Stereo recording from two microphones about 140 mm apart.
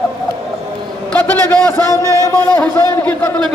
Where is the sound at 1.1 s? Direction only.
15° left (ahead or behind).